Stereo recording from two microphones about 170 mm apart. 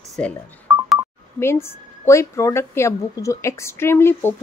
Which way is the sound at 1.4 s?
15° left (ahead or behind).